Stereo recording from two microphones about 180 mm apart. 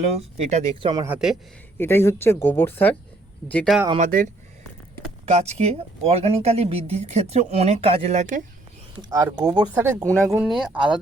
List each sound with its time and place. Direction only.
0.3 s speech: 35° right (ahead or behind)
1.0 s speech: 5° right (ahead or behind)
1.8 s speech: 15° left (ahead or behind)
3.9 s speech: 45° right (ahead or behind)
5.2 s speech: 35° right (ahead or behind)
9.0 s speech: 20° right (ahead or behind)
10.4 s speech: centre (ahead or behind)